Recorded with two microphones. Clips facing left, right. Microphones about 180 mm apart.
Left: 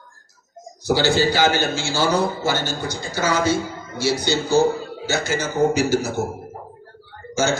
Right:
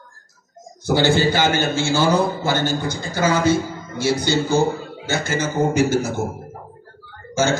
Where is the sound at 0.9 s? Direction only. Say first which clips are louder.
Right 1 dB; 55° right (ahead or behind).